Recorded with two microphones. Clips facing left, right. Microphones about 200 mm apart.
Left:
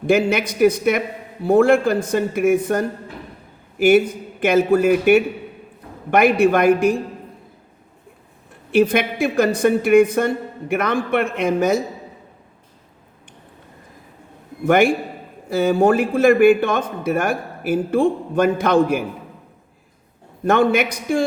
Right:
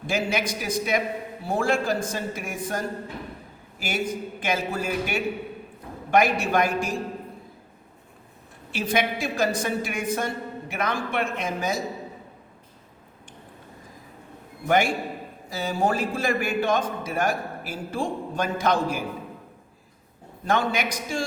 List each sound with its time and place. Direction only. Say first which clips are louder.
0.1 s a man's voice: left 9 dB; 60° left (ahead or behind)
8.7 s a man's voice: left 9 dB; 60° left (ahead or behind)
15.4 s a man's voice: left 10 dB; 55° left (ahead or behind)
20.4 s a man's voice: left 8 dB; 60° left (ahead or behind)